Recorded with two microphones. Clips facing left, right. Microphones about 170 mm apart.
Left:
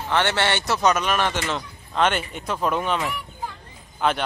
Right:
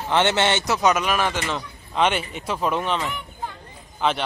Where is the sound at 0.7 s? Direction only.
5° right (ahead or behind).